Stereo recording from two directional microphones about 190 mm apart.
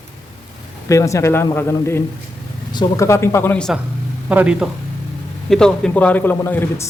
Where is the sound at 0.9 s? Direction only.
15° left (ahead or behind).